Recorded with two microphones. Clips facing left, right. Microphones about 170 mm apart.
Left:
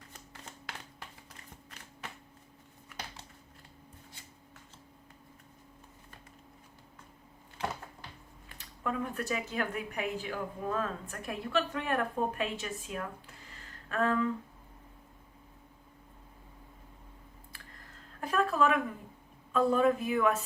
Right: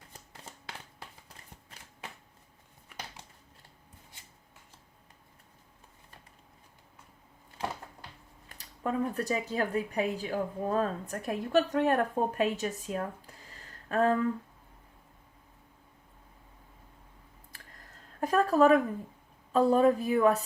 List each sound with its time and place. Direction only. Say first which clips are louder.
8.4 s speech: right 3 dB; 35° right (ahead or behind)
18.2 s a sound: right 5 dB; 40° right (ahead or behind)
19.5 s speech: right 3 dB; 35° right (ahead or behind)